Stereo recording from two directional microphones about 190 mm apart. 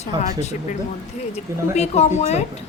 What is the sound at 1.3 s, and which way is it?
A woman's voice, 35° left (ahead or behind).